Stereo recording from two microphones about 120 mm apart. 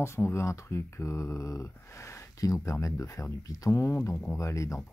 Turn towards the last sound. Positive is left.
turn(degrees=25)  # may be behind; listen again after turning